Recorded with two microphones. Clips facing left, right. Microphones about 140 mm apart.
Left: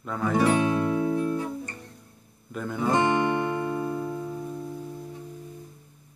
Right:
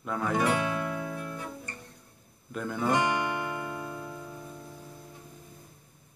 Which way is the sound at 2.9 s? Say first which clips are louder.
Left 5 dB; 30° left (ahead or behind).